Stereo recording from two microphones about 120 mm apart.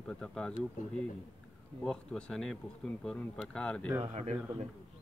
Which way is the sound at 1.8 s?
5° left (ahead or behind).